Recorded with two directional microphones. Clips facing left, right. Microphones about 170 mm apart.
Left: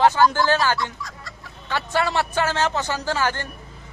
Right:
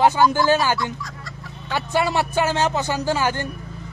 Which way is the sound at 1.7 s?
15° right (ahead or behind).